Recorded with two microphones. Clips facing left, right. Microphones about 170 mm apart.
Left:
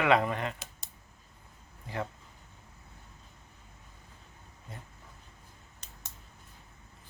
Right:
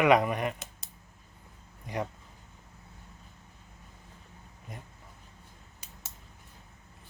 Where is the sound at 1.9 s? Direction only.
20° right (ahead or behind).